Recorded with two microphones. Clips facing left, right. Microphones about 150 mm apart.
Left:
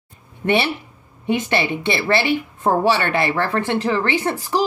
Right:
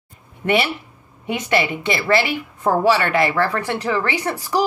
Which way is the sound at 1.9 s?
25° left (ahead or behind).